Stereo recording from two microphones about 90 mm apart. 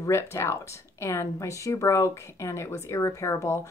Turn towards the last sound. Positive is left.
turn(degrees=35)  # may be behind; listen again after turning